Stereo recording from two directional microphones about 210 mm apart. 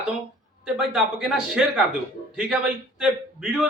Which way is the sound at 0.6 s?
Centre (ahead or behind).